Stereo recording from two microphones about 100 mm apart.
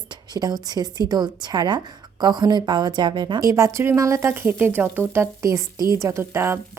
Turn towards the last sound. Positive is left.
turn(degrees=-25)  # may be behind; listen again after turning